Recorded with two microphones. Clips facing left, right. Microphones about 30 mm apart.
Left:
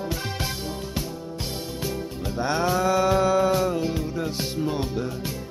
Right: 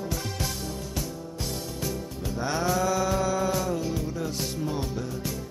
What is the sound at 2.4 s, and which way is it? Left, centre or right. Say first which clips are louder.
Music: left 3 dB; left.